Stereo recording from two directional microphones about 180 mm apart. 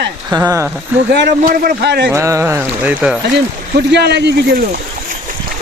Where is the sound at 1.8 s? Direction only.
70° right (ahead or behind).